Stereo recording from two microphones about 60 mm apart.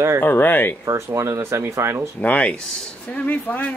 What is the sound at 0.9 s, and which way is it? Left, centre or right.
Speech, right.